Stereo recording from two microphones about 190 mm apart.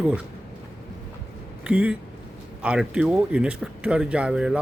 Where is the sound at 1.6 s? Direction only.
5° right (ahead or behind).